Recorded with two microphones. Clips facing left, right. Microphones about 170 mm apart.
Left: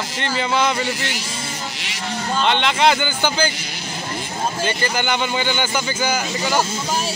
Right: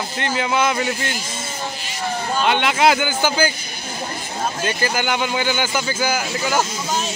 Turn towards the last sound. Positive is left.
turn(degrees=-5)  # may be behind; listen again after turning